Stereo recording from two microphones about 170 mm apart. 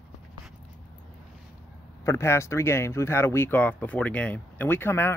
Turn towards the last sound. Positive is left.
turn(degrees=15)  # may be behind; listen again after turning